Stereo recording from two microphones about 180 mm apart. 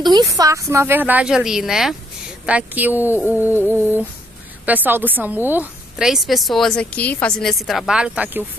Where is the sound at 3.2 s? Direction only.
15° left (ahead or behind).